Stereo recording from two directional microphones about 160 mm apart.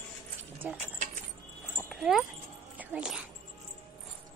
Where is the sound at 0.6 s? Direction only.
10° right (ahead or behind).